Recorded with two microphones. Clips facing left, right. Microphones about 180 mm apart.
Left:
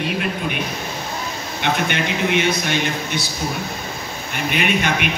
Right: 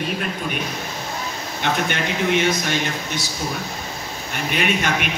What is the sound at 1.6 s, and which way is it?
A man's voice, 40° right (ahead or behind).